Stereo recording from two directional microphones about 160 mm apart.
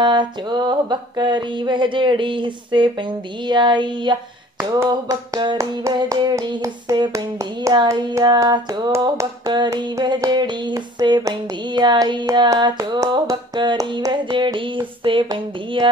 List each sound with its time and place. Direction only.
0.0 s hands: 30° right (ahead or behind)